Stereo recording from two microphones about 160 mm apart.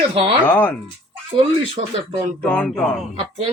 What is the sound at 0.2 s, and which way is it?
Speech, 35° right (ahead or behind).